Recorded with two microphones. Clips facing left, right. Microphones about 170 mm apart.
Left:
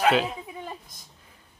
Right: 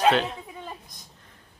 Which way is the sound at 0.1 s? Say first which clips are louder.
Even; 5° left (ahead or behind).